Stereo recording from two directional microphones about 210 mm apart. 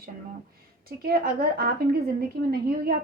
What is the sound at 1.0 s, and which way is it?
A woman's voice, 45° right (ahead or behind).